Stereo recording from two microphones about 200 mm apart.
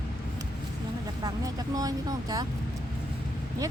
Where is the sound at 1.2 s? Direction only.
20° right (ahead or behind).